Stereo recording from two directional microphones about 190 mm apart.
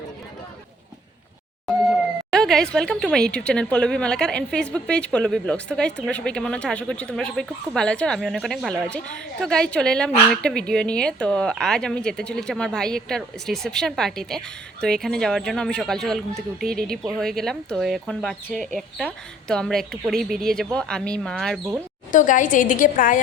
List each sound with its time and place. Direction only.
2.3 s speech: centre (ahead or behind)
22.1 s a woman's voice: 40° left (ahead or behind)